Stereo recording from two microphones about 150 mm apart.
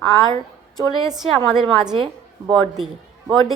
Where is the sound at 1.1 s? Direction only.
5° right (ahead or behind).